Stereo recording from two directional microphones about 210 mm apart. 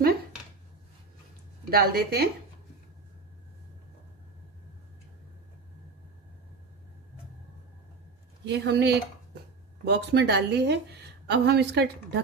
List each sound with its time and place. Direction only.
1.7 s a woman's voice: 45° right (ahead or behind)
8.5 s a woman's voice: 55° right (ahead or behind)